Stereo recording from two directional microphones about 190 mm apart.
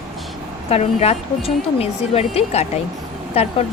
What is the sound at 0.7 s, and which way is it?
Speech, 30° left (ahead or behind).